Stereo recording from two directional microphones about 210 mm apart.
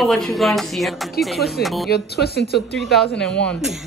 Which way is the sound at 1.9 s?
50° left (ahead or behind).